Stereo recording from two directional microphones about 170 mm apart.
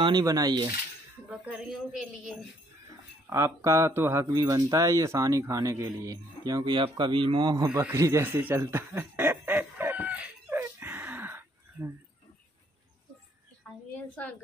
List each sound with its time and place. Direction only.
0.0 s speech: 25° right (ahead or behind)
1.3 s speech: 5° right (ahead or behind)
3.3 s speech: 15° right (ahead or behind)
7.8 s chuckle: 15° right (ahead or behind)
13.9 s a sound: 10° left (ahead or behind)